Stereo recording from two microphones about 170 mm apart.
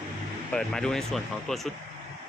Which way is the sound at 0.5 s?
5° left (ahead or behind).